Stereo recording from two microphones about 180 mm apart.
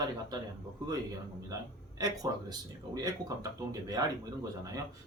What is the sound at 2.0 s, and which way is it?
Speech, 20° right (ahead or behind).